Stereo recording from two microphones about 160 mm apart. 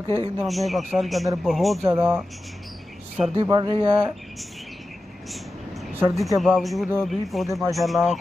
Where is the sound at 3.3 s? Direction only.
25° right (ahead or behind).